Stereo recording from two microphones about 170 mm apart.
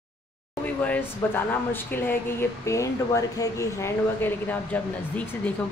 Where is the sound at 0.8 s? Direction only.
10° left (ahead or behind).